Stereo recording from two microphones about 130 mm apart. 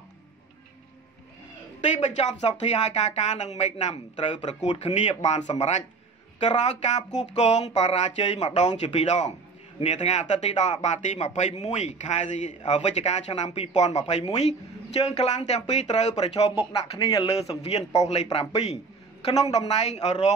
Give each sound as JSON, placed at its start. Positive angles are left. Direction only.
{"t": 1.8, "sound": "speech", "side_deg": 65}